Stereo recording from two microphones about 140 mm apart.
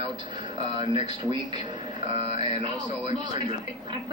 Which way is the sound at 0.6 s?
35° right (ahead or behind).